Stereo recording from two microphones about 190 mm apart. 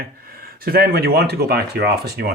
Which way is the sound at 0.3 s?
50° right (ahead or behind).